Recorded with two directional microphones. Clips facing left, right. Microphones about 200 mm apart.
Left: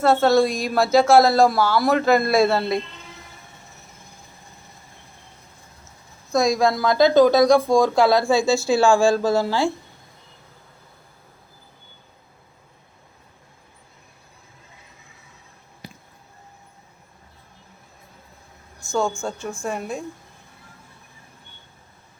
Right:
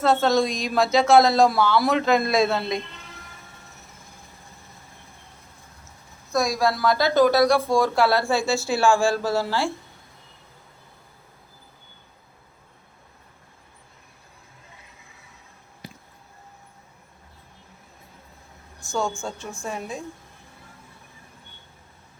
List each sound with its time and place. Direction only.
0.0 s a man's voice: 5° left (ahead or behind)
6.3 s a woman's voice: 20° left (ahead or behind)
19.6 s a man's voice: 5° left (ahead or behind)